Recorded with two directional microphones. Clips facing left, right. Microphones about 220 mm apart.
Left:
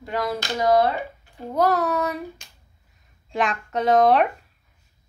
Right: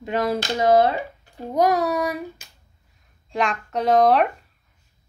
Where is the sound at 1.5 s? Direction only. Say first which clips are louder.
Right 1 dB; 15° right (ahead or behind).